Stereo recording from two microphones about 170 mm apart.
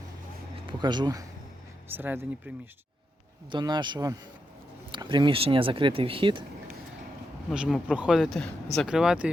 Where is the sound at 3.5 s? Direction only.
25° right (ahead or behind).